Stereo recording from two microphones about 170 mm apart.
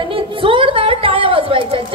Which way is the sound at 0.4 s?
30° right (ahead or behind).